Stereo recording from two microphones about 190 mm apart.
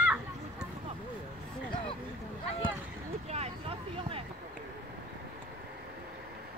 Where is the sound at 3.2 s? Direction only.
35° right (ahead or behind).